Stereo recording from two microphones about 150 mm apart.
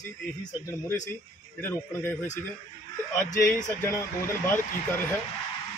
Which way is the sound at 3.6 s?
20° left (ahead or behind).